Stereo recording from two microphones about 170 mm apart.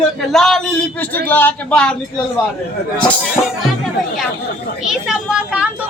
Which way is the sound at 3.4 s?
25° left (ahead or behind).